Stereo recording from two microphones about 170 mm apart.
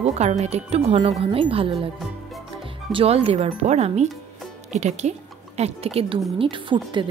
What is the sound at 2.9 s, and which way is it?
Speech, 30° right (ahead or behind).